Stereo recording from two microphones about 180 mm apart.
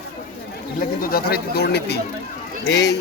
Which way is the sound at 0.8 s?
55° left (ahead or behind).